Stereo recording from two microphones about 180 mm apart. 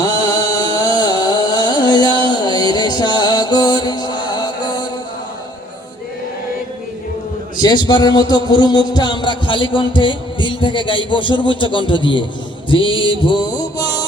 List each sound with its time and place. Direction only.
0.0 s music: 20° left (ahead or behind)
7.5 s a man's voice: 25° left (ahead or behind)